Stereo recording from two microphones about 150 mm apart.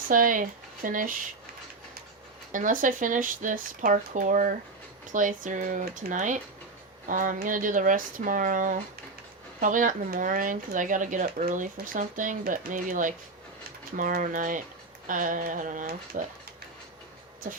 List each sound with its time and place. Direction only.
0.1 s speech: 65° right (ahead or behind)
2.5 s speech: 60° right (ahead or behind)